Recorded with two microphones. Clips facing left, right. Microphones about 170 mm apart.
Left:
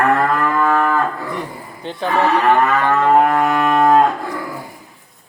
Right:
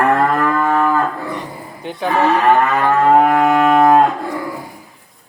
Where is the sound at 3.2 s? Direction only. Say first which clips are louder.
Right 3 dB; 15° right (ahead or behind).